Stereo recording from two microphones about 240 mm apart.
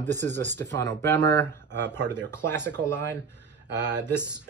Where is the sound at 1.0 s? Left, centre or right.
Centre.